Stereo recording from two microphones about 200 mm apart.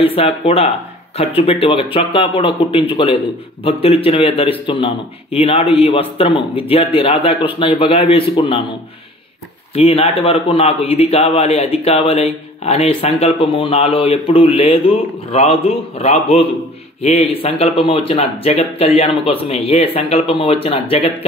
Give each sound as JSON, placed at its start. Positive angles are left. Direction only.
{"t": 0.0, "sound": "a man's voice", "side_deg": 30}
{"t": 9.8, "sound": "a man's voice", "side_deg": 30}